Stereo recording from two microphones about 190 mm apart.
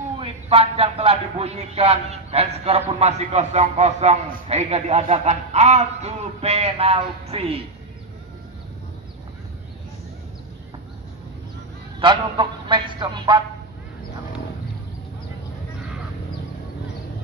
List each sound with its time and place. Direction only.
0.2 s a man's voice: 30° right (ahead or behind)
12.0 s speech: 25° right (ahead or behind)